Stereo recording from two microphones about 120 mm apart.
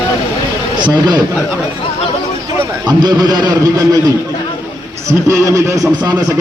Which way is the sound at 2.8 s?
35° right (ahead or behind).